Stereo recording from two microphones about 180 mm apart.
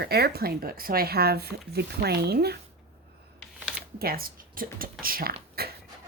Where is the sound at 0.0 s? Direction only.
60° right (ahead or behind).